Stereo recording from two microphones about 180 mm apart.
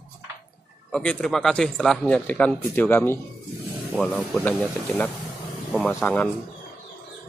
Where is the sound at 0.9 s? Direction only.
5° left (ahead or behind).